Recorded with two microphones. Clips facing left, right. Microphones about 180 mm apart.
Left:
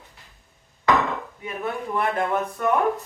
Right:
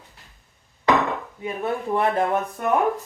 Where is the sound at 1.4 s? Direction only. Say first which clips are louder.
Right 4 dB; 30° right (ahead or behind).